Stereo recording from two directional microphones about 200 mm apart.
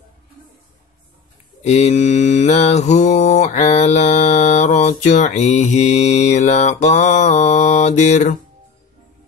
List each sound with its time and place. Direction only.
1.6 s mantra: 35° left (ahead or behind)